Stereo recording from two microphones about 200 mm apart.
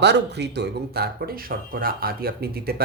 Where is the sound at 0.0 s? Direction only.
55° right (ahead or behind).